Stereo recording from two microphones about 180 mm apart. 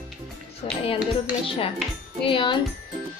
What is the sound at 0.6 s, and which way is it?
Music, 30° left (ahead or behind).